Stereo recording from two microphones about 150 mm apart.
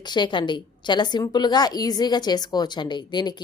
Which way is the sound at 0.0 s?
30° left (ahead or behind).